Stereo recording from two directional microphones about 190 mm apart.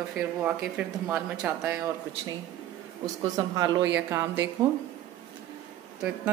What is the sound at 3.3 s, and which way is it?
A woman's voice, 20° right (ahead or behind).